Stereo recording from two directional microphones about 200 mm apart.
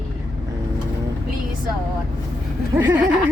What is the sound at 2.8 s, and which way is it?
Speech, 10° right (ahead or behind).